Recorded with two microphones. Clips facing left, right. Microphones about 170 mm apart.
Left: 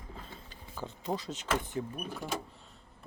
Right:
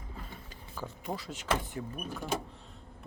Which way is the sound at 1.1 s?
20° left (ahead or behind).